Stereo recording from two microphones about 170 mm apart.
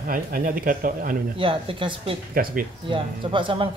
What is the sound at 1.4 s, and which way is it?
Speech, 30° right (ahead or behind).